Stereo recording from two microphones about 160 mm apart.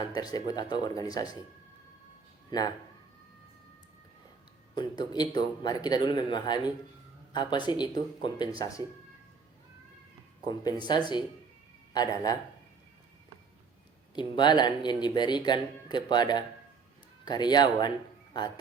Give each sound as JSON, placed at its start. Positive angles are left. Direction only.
{"t": 0.1, "sound": "speech", "side_deg": 25}
{"t": 2.5, "sound": "speech", "side_deg": 25}
{"t": 4.7, "sound": "speech", "side_deg": 25}
{"t": 10.4, "sound": "speech", "side_deg": 25}
{"t": 11.9, "sound": "speech", "side_deg": 25}
{"t": 14.2, "sound": "speech", "side_deg": 30}